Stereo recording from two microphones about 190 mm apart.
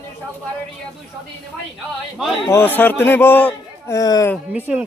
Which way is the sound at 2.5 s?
10° left (ahead or behind).